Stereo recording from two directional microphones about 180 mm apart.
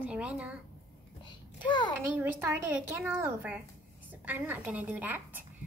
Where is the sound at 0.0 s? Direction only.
5° right (ahead or behind).